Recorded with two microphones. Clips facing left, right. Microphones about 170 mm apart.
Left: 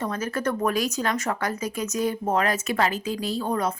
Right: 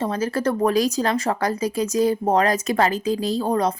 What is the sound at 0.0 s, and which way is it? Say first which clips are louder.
Speech: right 5 dB; 30° right (ahead or behind).